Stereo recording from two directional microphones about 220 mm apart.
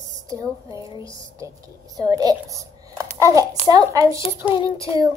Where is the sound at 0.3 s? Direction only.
15° right (ahead or behind).